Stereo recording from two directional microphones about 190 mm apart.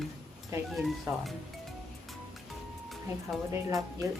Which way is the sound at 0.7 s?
Centre (ahead or behind).